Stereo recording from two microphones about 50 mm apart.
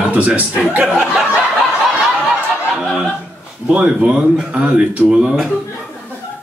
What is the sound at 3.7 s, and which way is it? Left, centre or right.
Speech, right.